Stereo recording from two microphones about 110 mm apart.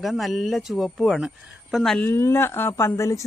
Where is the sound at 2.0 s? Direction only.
20° left (ahead or behind).